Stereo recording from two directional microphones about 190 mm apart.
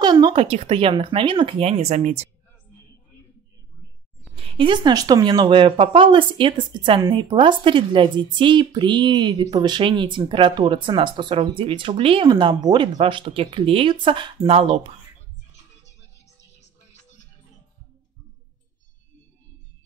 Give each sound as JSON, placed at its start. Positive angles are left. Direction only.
{"t": 0.0, "sound": "speech", "side_deg": -20}
{"t": 4.4, "sound": "speech", "side_deg": -30}